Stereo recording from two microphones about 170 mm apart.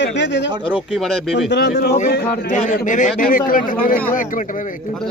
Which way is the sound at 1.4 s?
85° left.